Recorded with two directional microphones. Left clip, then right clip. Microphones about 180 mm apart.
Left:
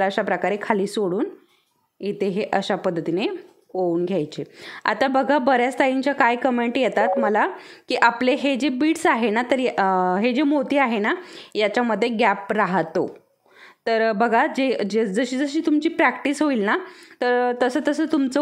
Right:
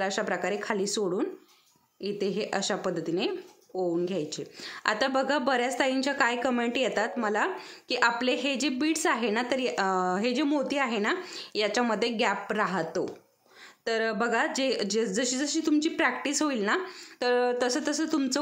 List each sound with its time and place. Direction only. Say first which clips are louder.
0.0 s a woman's voice: left 8 dB; 30° left (ahead or behind)